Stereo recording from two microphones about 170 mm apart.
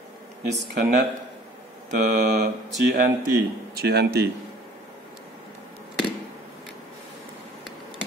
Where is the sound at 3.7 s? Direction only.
70° right (ahead or behind).